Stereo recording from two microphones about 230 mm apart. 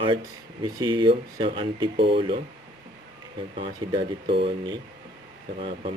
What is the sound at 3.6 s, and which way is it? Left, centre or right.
Speech, right.